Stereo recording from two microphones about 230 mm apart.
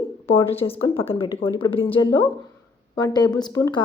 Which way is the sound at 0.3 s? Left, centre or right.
Left.